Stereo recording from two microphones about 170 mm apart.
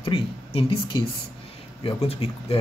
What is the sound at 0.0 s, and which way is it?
A man's voice, 35° left (ahead or behind).